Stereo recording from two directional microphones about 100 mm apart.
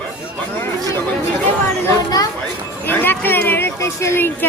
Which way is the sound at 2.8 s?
20° left (ahead or behind).